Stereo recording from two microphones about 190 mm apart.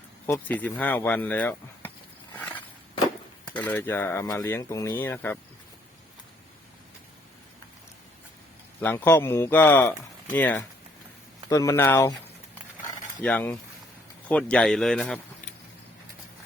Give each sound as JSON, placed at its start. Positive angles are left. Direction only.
{"t": 0.3, "sound": "speech", "side_deg": 10}
{"t": 3.5, "sound": "speech", "side_deg": 10}
{"t": 8.8, "sound": "speech", "side_deg": 10}
{"t": 13.2, "sound": "speech", "side_deg": 10}